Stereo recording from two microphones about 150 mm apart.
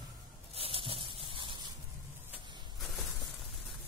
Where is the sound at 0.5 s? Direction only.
40° right (ahead or behind).